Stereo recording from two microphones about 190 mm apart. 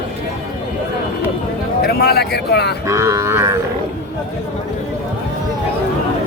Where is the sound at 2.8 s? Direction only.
15° right (ahead or behind).